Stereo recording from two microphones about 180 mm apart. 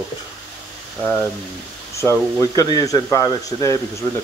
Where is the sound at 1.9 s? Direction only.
15° left (ahead or behind).